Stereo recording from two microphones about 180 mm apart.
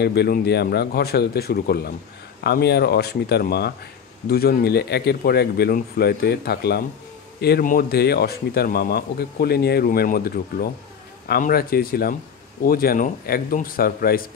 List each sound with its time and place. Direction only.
0.0 s speech: 65° left (ahead or behind)